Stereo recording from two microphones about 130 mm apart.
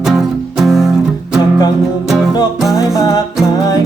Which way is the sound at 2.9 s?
25° left (ahead or behind).